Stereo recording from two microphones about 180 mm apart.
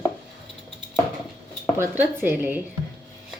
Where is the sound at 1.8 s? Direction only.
10° right (ahead or behind).